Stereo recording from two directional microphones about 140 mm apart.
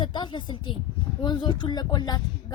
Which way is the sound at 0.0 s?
35° left (ahead or behind).